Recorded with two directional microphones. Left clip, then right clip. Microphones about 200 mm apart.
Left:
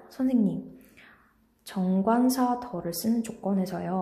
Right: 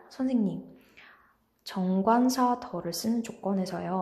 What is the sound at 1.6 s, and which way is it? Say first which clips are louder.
A woman's voice: right 1 dB; centre (ahead or behind).